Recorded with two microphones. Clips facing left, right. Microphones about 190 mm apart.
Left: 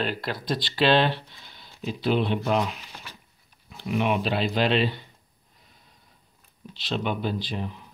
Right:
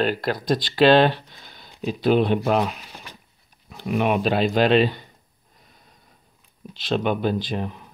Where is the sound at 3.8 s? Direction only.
50° right (ahead or behind).